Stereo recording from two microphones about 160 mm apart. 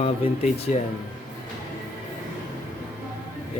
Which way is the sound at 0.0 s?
45° left (ahead or behind).